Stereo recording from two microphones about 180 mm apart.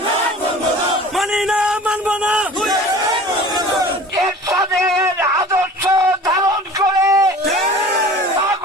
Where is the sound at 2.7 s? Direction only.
20° right (ahead or behind).